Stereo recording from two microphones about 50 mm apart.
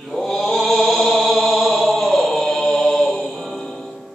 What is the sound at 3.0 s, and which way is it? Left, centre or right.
Mantra, centre.